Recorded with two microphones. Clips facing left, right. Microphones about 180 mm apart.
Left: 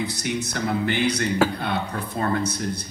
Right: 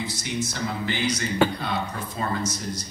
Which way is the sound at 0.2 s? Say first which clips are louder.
Left 2 dB; 60° left (ahead or behind).